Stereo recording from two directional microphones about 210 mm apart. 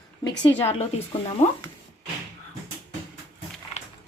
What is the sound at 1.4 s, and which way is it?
Speech, 30° left (ahead or behind).